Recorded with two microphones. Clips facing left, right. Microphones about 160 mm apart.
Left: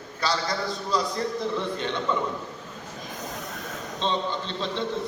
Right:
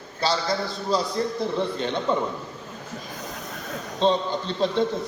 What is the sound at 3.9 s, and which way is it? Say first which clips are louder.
Speech: right 6 dB; 40° right (ahead or behind).